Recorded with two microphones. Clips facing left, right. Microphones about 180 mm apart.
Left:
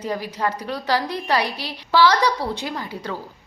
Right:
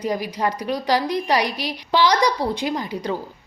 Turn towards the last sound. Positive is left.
turn(degrees=-15)  # may be behind; listen again after turning